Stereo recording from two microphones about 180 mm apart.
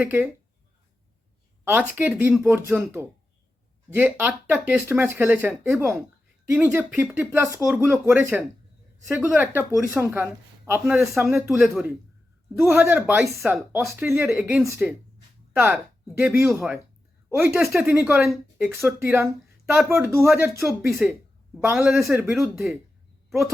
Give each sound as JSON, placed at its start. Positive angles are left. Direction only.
{"t": 0.0, "sound": "speech", "side_deg": -10}
{"t": 1.6, "sound": "speech", "side_deg": -10}
{"t": 11.2, "sound": "speech", "side_deg": -15}
{"t": 19.9, "sound": "speech", "side_deg": -15}
{"t": 20.6, "sound": "speech", "side_deg": 0}